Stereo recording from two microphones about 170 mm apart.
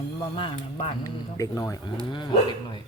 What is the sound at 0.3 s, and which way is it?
Speech, 30° left (ahead or behind).